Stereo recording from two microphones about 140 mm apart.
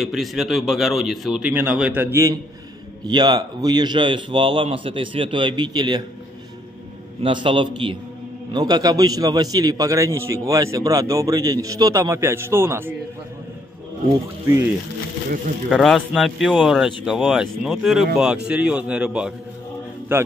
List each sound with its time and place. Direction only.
0.0 s speech: centre (ahead or behind)
1.5 s a man's voice: 10° right (ahead or behind)
3.1 s a man's voice: 30° right (ahead or behind)
7.2 s a man's voice: 35° right (ahead or behind); by 12.9 s 15° right (ahead or behind)
15.7 s a man's voice: centre (ahead or behind)